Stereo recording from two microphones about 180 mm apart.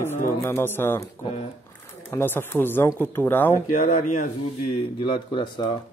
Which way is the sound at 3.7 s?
45° left (ahead or behind).